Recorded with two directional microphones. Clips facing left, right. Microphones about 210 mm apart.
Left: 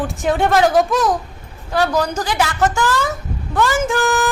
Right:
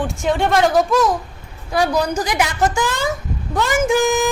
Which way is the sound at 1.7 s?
10° right (ahead or behind).